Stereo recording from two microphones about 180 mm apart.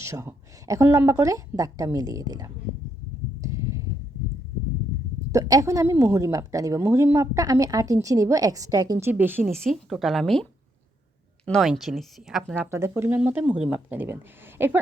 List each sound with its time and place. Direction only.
0.0 s a woman's voice: 15° right (ahead or behind)
3.4 s a sound: 15° right (ahead or behind)
5.3 s a woman's voice: 20° right (ahead or behind)
9.4 s speech: centre (ahead or behind)
11.4 s speech: centre (ahead or behind)
12.7 s a woman's voice: 15° right (ahead or behind)